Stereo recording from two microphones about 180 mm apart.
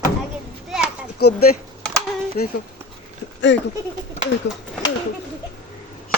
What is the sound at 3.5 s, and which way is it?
Speech, 85° left.